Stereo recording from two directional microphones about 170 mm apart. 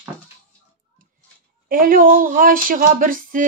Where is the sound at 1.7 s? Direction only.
55° right (ahead or behind).